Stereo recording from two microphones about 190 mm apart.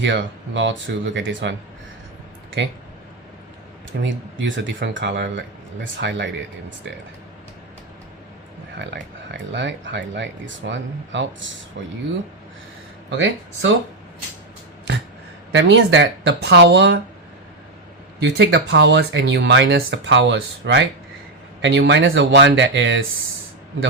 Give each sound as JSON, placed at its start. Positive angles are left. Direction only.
{"t": 0.0, "sound": "speech", "side_deg": -75}
{"t": 4.0, "sound": "speech", "side_deg": -80}
{"t": 9.5, "sound": "speech", "side_deg": -70}
{"t": 11.8, "sound": "speech", "side_deg": -65}
{"t": 13.1, "sound": "speech", "side_deg": -70}
{"t": 15.5, "sound": "speech", "side_deg": -75}
{"t": 18.3, "sound": "speech", "side_deg": -65}